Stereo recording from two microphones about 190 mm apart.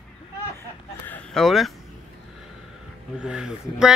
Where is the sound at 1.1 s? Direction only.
5° left (ahead or behind).